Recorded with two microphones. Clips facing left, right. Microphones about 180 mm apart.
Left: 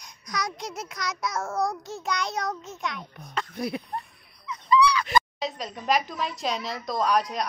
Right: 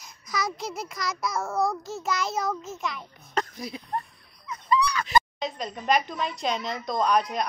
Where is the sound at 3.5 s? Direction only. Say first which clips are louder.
Left 6 dB; 60° left (ahead or behind).